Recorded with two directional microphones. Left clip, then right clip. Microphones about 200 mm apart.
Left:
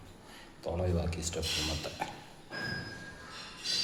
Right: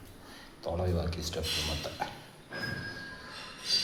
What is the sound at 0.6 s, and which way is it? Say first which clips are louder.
Speech: right 1 dB; 10° left (ahead or behind).